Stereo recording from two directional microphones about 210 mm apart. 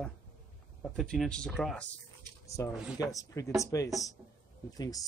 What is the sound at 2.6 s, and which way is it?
Speech, 15° left (ahead or behind).